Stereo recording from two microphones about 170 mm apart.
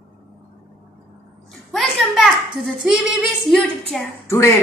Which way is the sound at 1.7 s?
Centre (ahead or behind).